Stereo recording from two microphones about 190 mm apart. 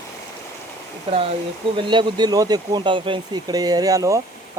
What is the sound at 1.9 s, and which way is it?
Speech, 25° right (ahead or behind).